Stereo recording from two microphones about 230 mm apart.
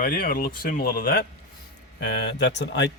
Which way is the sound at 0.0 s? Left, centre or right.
Left.